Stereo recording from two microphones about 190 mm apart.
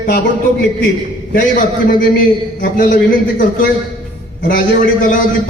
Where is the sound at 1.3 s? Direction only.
50° left (ahead or behind).